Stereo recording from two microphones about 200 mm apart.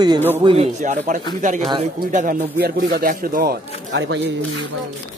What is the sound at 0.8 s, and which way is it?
Speech, 40° right (ahead or behind).